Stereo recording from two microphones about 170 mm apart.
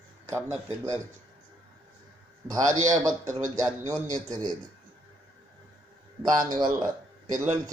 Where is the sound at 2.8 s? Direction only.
20° right (ahead or behind).